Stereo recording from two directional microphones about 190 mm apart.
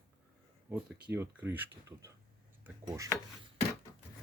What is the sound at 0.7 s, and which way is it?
Speech, 10° right (ahead or behind).